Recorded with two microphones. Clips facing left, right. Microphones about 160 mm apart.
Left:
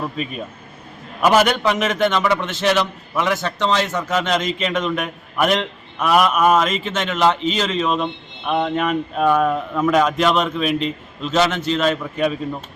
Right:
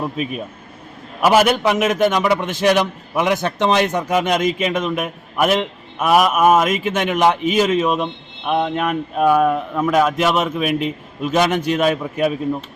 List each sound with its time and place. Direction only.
0.0 s a man's voice: 5° right (ahead or behind)